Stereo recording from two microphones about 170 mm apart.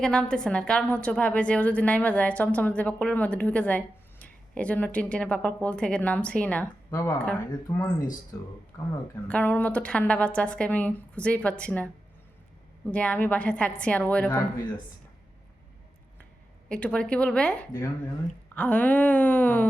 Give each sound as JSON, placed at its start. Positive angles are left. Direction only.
{"t": 0.0, "sound": "a woman's voice", "side_deg": 5}
{"t": 9.2, "sound": "a woman's voice", "side_deg": 10}
{"t": 12.9, "sound": "a woman's voice", "side_deg": 10}
{"t": 16.6, "sound": "a woman's voice", "side_deg": 5}